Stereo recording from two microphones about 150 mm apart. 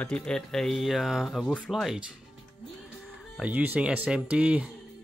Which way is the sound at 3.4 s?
10° right (ahead or behind).